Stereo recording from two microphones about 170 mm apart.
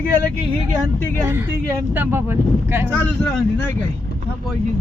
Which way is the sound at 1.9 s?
10° right (ahead or behind).